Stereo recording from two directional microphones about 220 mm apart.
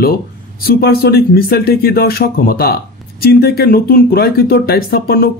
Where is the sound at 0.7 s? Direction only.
45° left (ahead or behind).